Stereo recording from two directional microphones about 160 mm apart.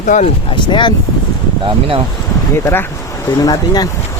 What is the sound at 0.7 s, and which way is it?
Speech, 30° left (ahead or behind).